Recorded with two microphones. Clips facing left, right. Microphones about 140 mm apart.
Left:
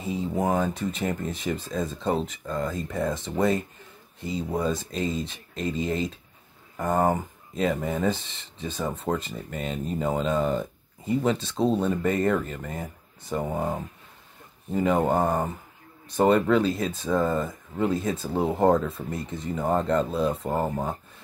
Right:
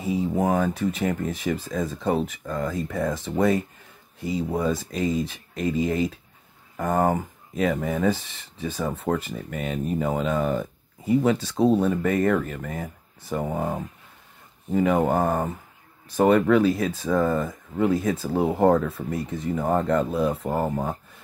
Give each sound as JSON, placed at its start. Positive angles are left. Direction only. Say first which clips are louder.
{"t": 0.0, "sound": "speech", "louder": "right 3 dB", "side_deg": -10}
{"t": 2.9, "sound": "speech", "louder": "even", "side_deg": 10}
{"t": 4.2, "sound": "speech", "louder": "right 2 dB", "side_deg": -10}
{"t": 6.8, "sound": "speech", "louder": "right 1 dB", "side_deg": 10}
{"t": 7.1, "sound": "speech", "louder": "right 1 dB", "side_deg": -10}